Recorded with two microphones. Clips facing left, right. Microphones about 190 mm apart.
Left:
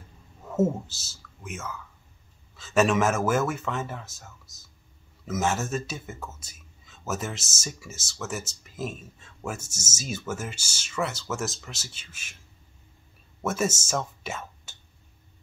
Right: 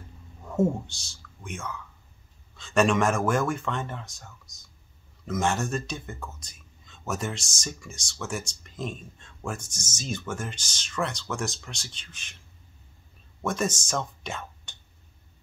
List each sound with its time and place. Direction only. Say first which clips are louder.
0.4 s speech: even; 5° left (ahead or behind)
13.4 s speech: left 1 dB; 5° left (ahead or behind)